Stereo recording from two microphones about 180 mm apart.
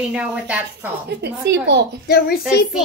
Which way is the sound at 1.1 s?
70° right (ahead or behind).